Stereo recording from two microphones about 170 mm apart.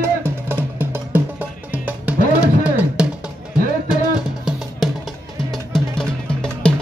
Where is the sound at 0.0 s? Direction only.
15° right (ahead or behind).